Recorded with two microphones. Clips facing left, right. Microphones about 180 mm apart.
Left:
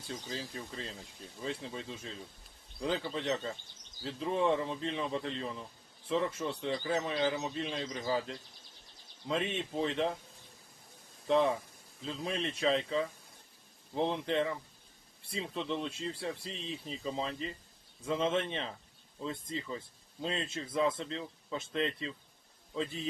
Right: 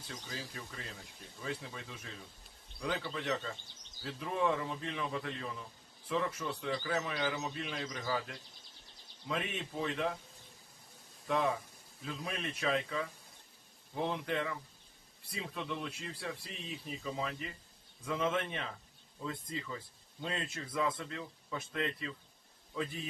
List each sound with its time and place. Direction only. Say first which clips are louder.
0.1 s speech: left 5 dB; 25° left (ahead or behind)
11.3 s a man's voice: left 5 dB; 30° left (ahead or behind)